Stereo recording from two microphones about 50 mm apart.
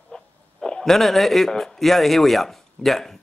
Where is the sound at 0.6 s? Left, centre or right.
Centre.